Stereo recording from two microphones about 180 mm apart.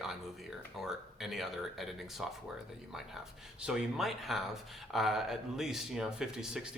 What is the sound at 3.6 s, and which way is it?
Speech, centre (ahead or behind).